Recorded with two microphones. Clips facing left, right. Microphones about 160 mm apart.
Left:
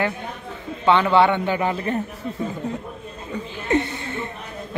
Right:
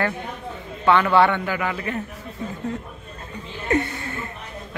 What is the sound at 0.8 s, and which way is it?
Speech, 20° left (ahead or behind).